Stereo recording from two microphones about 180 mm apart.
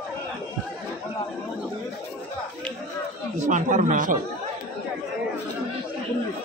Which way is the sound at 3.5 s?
45° right (ahead or behind).